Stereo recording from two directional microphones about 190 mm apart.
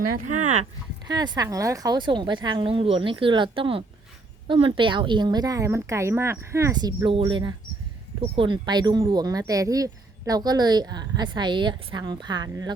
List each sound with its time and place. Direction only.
0.1 s speech: 40° right (ahead or behind)
1.0 s speech: 20° right (ahead or behind)